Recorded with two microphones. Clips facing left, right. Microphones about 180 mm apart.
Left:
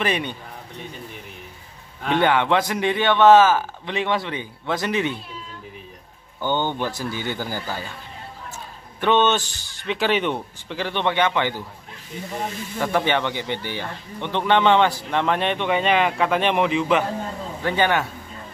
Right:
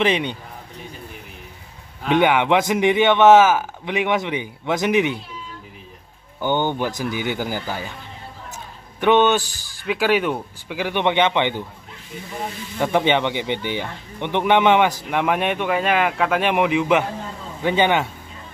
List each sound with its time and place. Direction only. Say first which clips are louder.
0.0 s a man's voice: right 4 dB; 20° right (ahead or behind)
2.0 s a man's voice: right 2 dB; 15° right (ahead or behind)
6.4 s a man's voice: right 2 dB; 15° right (ahead or behind)
9.0 s a man's voice: right 3 dB; 15° right (ahead or behind)
12.8 s a man's voice: right 3 dB; 20° right (ahead or behind)